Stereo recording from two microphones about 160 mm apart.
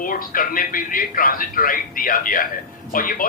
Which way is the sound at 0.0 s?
60° left (ahead or behind).